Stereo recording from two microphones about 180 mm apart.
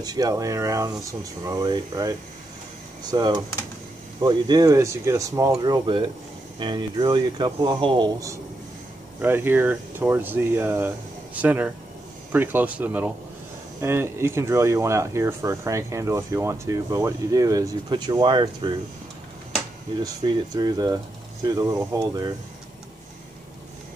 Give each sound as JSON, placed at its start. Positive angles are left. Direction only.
{"t": 0.0, "sound": "speech", "side_deg": -20}
{"t": 20.0, "sound": "speech", "side_deg": -25}